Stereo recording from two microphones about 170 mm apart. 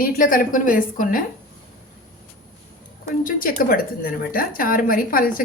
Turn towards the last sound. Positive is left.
turn(degrees=55)  # may be behind; listen again after turning